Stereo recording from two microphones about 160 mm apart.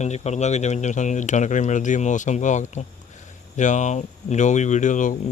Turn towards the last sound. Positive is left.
turn(degrees=55)  # may be behind; listen again after turning